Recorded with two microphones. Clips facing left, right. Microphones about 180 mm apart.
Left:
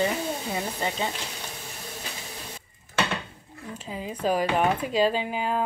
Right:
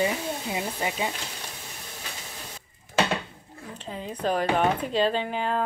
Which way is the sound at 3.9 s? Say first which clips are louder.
Left 1 dB; 5° left (ahead or behind).